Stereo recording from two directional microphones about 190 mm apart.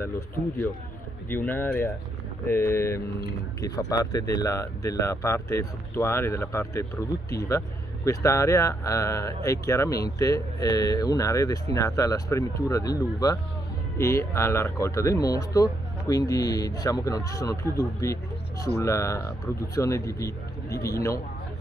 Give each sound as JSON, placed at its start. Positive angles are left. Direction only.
{"t": 1.3, "sound": "speech", "side_deg": 10}